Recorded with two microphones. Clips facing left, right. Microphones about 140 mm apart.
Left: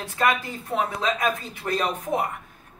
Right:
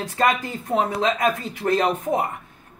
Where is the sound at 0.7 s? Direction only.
25° right (ahead or behind).